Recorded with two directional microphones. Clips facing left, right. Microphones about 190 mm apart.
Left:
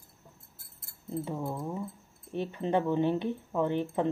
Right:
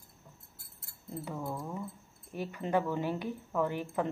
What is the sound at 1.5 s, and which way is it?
Speech, 20° left (ahead or behind).